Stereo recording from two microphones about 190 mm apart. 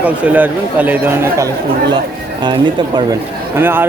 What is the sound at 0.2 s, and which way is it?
A man's voice, 10° right (ahead or behind).